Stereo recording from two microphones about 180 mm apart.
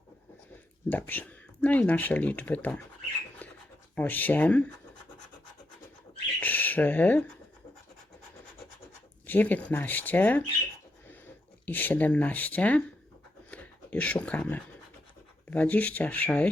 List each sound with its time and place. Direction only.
0.9 s speech: 10° left (ahead or behind)
3.9 s speech: 10° left (ahead or behind)
6.4 s a sound: 10° left (ahead or behind)
9.2 s speech: 10° left (ahead or behind)
11.6 s speech: 10° left (ahead or behind)
13.5 s a sound: 10° left (ahead or behind)
15.4 s speech: 10° left (ahead or behind)